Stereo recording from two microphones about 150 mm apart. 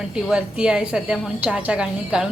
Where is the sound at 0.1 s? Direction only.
5° right (ahead or behind).